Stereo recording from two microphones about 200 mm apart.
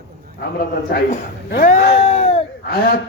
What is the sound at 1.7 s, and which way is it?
Speech, 35° left (ahead or behind).